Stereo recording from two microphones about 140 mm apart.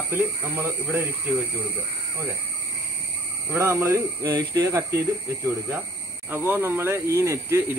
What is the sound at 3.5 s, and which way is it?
Speech, 20° right (ahead or behind).